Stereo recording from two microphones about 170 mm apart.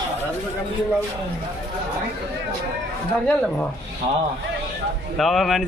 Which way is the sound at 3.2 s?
5° left (ahead or behind).